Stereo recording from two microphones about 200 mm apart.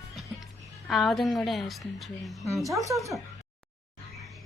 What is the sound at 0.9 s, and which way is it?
Speech, centre (ahead or behind).